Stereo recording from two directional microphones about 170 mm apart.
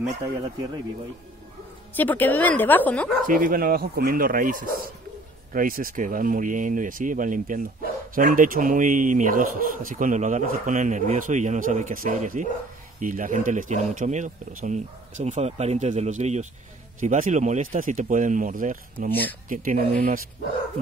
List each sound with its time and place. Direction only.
2.0 s a woman's voice: 10° left (ahead or behind)
3.3 s speech: 55° right (ahead or behind)